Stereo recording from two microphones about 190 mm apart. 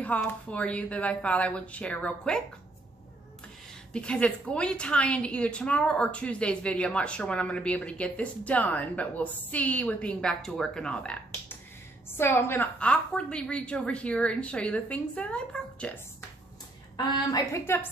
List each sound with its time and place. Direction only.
0.0 s speech: 5° left (ahead or behind)
3.9 s a woman's voice: 5° left (ahead or behind)
16.9 s speech: 20° left (ahead or behind)